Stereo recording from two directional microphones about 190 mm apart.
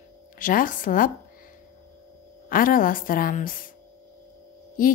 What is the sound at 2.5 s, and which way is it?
A woman's voice, 45° left (ahead or behind).